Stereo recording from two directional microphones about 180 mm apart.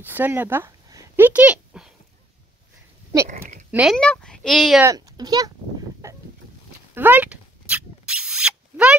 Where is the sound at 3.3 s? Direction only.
55° right (ahead or behind).